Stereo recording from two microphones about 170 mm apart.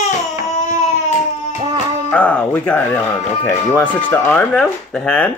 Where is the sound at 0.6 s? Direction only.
45° left (ahead or behind).